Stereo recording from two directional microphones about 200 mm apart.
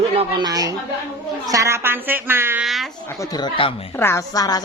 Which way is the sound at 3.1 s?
15° left (ahead or behind).